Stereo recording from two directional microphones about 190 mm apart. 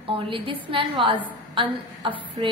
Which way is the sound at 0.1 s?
30° right (ahead or behind).